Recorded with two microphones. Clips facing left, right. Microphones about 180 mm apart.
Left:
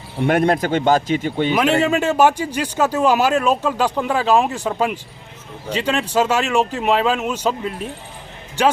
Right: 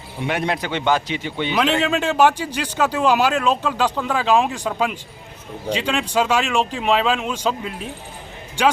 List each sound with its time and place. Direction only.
0.2 s speech: 50° left (ahead or behind)
1.8 s speech: 10° left (ahead or behind)